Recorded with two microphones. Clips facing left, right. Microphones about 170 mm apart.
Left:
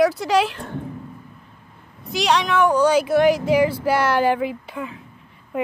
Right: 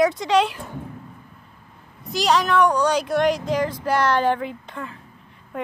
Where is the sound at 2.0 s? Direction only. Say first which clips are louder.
Even; centre (ahead or behind).